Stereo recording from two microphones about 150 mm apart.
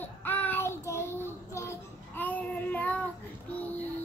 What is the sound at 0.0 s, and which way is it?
Child singing, 10° left (ahead or behind).